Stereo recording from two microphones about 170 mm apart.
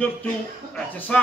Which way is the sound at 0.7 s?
5° left (ahead or behind).